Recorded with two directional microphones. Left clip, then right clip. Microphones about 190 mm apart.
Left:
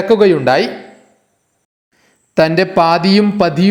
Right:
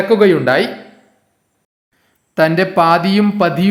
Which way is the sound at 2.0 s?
20° left (ahead or behind).